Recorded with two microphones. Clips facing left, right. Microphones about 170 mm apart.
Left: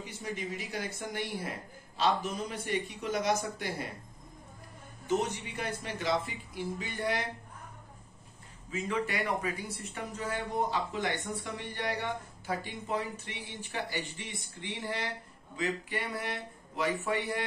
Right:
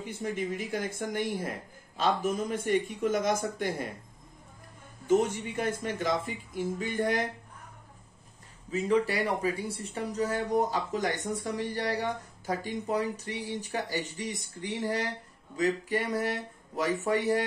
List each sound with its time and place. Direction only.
0.0 s speech: 55° right (ahead or behind)
5.0 s speech: 50° right (ahead or behind)
8.6 s a man's voice: 35° right (ahead or behind)